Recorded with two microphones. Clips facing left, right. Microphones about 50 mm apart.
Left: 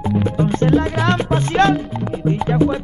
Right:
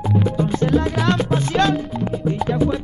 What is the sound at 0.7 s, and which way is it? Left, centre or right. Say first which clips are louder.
Music: left 1 dB; left.